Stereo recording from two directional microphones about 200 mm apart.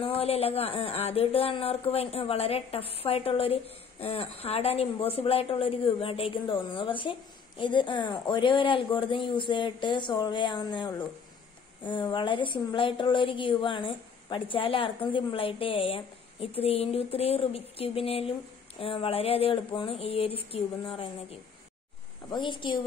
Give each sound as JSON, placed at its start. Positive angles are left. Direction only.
{"t": 0.0, "sound": "a woman's voice", "side_deg": 30}